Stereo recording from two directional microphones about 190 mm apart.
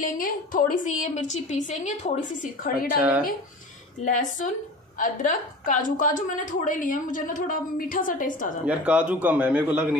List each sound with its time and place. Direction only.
0.0 s a woman's voice: 45° left (ahead or behind)
4.0 s a woman's voice: 40° left (ahead or behind)
8.6 s a man's voice: 5° right (ahead or behind)